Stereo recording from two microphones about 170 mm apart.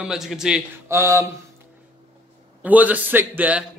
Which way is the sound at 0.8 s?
15° right (ahead or behind).